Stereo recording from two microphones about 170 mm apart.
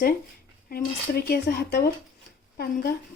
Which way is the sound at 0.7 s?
65° left (ahead or behind).